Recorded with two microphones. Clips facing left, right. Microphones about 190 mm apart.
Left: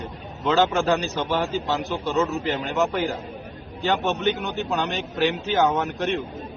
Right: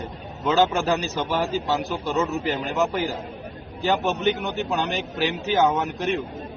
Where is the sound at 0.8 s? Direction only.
5° right (ahead or behind).